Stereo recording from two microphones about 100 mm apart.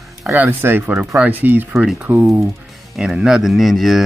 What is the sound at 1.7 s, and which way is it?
Speech, 5° right (ahead or behind).